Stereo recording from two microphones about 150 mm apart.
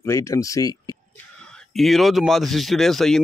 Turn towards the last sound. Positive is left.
turn(degrees=0)  # may be behind; listen again after turning